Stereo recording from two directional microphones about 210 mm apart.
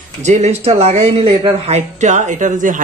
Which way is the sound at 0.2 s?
35° right (ahead or behind).